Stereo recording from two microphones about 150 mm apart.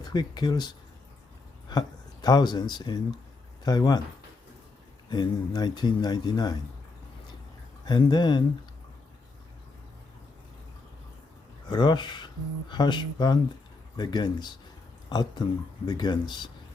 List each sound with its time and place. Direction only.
0.0 s speech: 30° left (ahead or behind)
2.2 s speech: 30° left (ahead or behind)
5.0 s speech: 30° left (ahead or behind)
7.9 s speech: 30° left (ahead or behind)
11.7 s speech: 30° left (ahead or behind)